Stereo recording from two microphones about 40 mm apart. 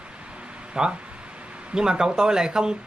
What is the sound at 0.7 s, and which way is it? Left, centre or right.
Speech, right.